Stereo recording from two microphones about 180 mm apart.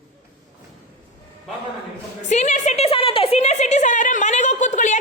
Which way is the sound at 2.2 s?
40° left (ahead or behind).